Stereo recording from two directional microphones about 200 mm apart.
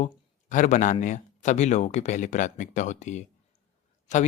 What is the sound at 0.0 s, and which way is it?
Speech, 40° left (ahead or behind).